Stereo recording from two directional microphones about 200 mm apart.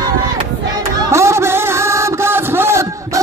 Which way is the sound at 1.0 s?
15° right (ahead or behind).